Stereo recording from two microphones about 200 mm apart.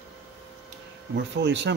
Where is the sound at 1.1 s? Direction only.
60° right (ahead or behind).